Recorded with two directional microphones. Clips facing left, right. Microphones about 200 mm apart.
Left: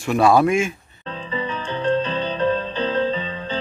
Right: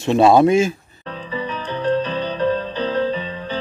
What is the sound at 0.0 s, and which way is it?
Speech, 25° right (ahead or behind).